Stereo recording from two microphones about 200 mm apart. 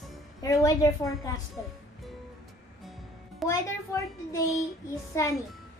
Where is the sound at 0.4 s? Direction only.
15° left (ahead or behind).